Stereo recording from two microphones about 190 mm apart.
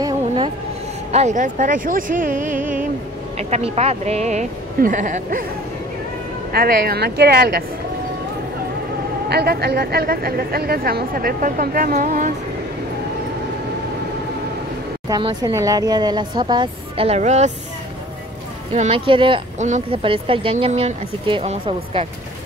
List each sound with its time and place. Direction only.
1.1 s a woman's voice: 40° right (ahead or behind)
3.3 s speech: 35° right (ahead or behind)
6.5 s a woman's voice: 50° right (ahead or behind)
9.3 s a woman's voice: 60° right (ahead or behind)
15.0 s speech: 20° right (ahead or behind)
18.8 s speech: 30° right (ahead or behind)